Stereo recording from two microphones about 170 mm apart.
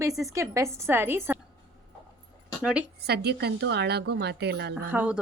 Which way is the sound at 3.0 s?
70° right (ahead or behind).